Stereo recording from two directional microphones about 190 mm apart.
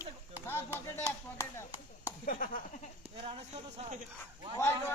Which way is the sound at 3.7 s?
35° right (ahead or behind).